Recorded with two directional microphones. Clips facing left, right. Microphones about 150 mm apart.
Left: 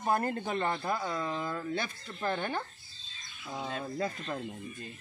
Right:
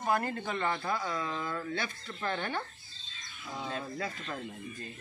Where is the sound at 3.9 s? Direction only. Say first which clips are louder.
Left 3 dB; 25° left (ahead or behind).